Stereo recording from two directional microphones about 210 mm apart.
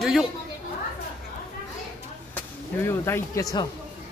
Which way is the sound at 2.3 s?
10° left (ahead or behind).